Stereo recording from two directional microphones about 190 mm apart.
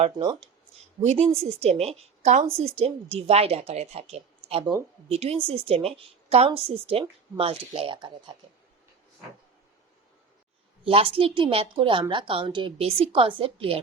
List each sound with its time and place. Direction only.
1.0 s a woman's voice: 35° right (ahead or behind)
10.8 s a woman's voice: 30° right (ahead or behind)